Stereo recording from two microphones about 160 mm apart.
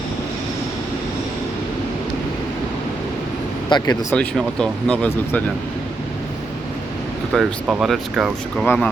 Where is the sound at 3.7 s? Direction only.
25° left (ahead or behind).